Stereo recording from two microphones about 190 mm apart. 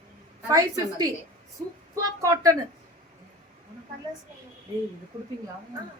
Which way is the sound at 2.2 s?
20° right (ahead or behind).